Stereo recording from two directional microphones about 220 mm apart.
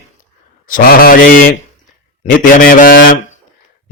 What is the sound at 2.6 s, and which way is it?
Mantra, 40° left (ahead or behind).